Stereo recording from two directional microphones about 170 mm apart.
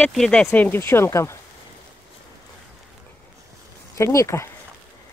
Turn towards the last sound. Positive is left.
turn(degrees=15)  # may be behind; listen again after turning